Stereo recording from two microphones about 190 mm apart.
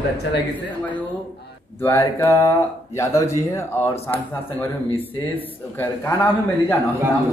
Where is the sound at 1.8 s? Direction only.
10° left (ahead or behind).